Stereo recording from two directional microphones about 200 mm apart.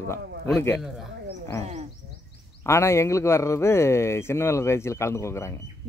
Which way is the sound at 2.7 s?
15° left (ahead or behind).